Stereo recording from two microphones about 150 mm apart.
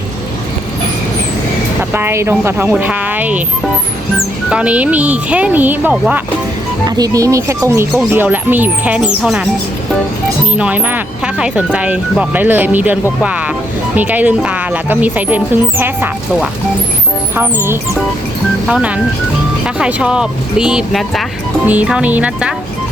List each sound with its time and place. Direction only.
1.9 s speech: 15° right (ahead or behind)
4.4 s speech: 10° right (ahead or behind)
6.8 s speech: 25° right (ahead or behind); by 9.5 s 5° right (ahead or behind)
10.5 s speech: 10° right (ahead or behind)
17.3 s speech: 15° right (ahead or behind)